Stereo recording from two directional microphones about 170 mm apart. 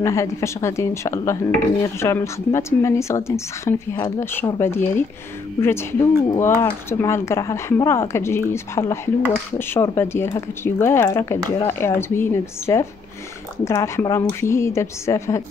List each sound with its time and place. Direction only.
0.0 s speech: 15° left (ahead or behind)